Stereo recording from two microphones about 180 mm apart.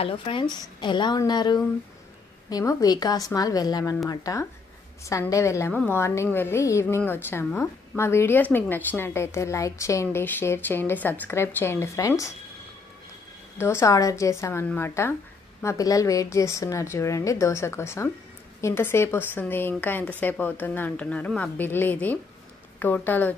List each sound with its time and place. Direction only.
0.0 s a woman's voice: 30° left (ahead or behind)
13.6 s a woman's voice: 15° left (ahead or behind)